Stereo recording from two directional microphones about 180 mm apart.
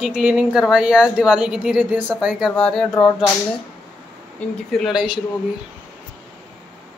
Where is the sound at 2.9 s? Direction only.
20° left (ahead or behind).